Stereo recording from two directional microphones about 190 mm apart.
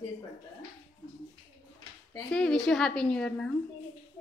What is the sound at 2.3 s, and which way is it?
A woman's voice, 5° left (ahead or behind).